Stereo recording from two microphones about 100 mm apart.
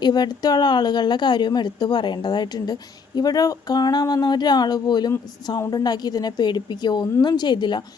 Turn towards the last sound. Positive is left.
turn(degrees=50)  # may be behind; listen again after turning